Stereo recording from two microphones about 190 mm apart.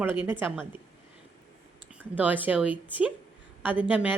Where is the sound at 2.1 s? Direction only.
10° right (ahead or behind).